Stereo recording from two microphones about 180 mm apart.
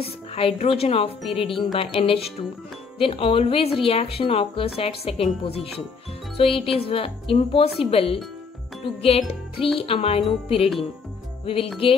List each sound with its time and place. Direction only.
0.3 s speech: 35° left (ahead or behind)